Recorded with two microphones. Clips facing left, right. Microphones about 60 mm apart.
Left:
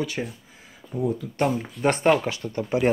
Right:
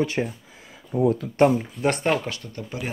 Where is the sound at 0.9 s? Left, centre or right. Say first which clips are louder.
Right 5 dB; right.